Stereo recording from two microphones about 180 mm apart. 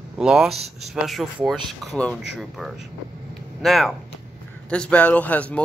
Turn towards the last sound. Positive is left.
turn(degrees=10)  # may be behind; listen again after turning